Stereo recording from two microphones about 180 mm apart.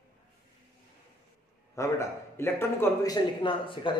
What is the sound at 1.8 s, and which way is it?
Speech, 15° left (ahead or behind).